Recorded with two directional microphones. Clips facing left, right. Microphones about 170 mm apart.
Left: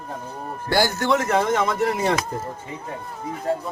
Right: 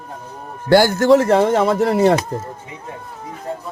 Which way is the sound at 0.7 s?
50° right (ahead or behind).